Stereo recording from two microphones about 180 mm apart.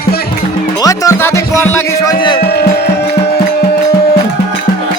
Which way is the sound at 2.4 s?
65° left (ahead or behind).